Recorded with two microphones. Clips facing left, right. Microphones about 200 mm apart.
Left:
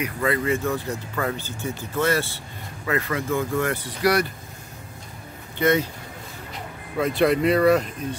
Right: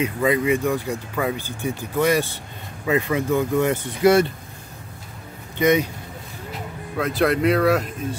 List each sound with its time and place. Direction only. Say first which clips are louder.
0.0 s speech: right 4 dB; 15° right (ahead or behind)
5.6 s speech: right 2 dB; 15° right (ahead or behind)
7.0 s speech: even; centre (ahead or behind)